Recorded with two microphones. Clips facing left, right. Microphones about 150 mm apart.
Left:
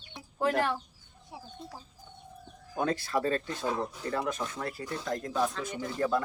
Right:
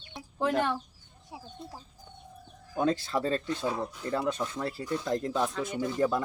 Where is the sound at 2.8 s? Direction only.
25° right (ahead or behind).